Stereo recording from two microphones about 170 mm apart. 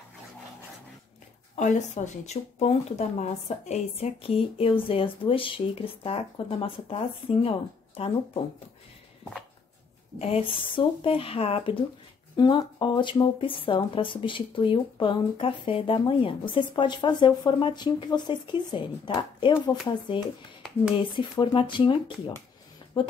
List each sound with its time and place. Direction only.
1.5 s speech: 45° left (ahead or behind)
10.1 s speech: 35° left (ahead or behind)
20.9 s speech: 30° left (ahead or behind)